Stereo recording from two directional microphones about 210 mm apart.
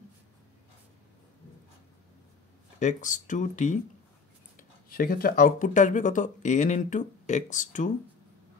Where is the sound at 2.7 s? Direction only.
35° left (ahead or behind).